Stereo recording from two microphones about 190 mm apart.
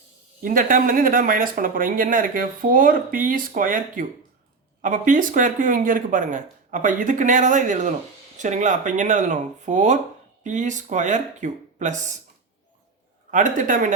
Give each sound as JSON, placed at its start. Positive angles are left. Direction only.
{"t": 0.4, "sound": "speech", "side_deg": -45}
{"t": 13.3, "sound": "speech", "side_deg": -45}